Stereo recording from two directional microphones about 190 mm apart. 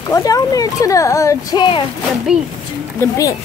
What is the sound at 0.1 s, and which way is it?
Speech, 20° left (ahead or behind).